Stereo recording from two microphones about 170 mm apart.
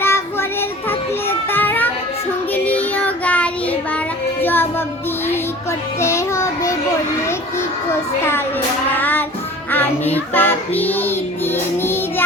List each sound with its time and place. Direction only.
0.0 s child singing: 15° left (ahead or behind)
0.9 s children playing: 10° left (ahead or behind)
2.5 s child singing: 10° left (ahead or behind)
6.0 s child singing: 15° left (ahead or behind)
9.0 s music: 10° left (ahead or behind)